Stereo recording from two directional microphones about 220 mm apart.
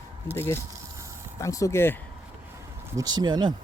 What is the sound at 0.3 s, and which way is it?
Speech, 10° left (ahead or behind).